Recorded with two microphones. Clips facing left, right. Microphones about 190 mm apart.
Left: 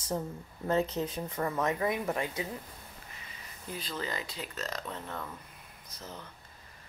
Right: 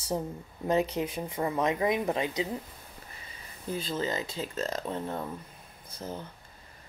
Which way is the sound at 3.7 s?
25° right (ahead or behind).